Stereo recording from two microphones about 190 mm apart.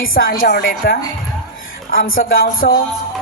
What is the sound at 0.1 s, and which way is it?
Speech, 50° left (ahead or behind).